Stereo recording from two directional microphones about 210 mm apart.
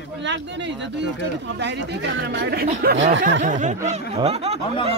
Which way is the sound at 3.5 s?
35° right (ahead or behind).